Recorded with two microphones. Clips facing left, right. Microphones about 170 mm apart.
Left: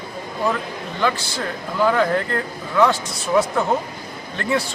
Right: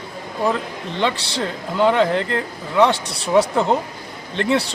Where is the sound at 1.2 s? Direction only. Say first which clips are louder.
Right 2 dB; 75° right (ahead or behind).